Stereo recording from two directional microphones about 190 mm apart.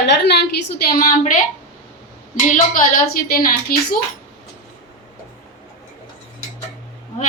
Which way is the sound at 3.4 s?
50° left (ahead or behind).